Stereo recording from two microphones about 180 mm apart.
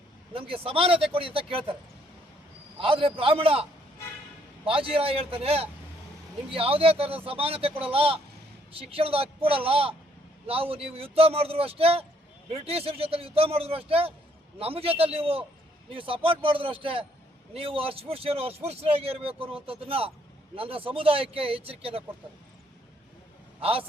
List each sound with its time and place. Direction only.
0.3 s speech: 30° right (ahead or behind)
2.7 s a man's voice: 30° right (ahead or behind)
23.6 s a man's voice: 30° right (ahead or behind)